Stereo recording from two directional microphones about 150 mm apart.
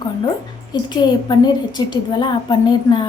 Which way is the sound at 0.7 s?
30° left (ahead or behind).